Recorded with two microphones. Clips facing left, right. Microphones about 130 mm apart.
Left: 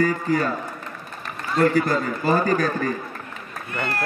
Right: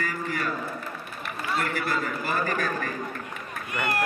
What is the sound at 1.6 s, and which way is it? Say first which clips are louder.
A man's voice: left 13 dB; 35° left (ahead or behind).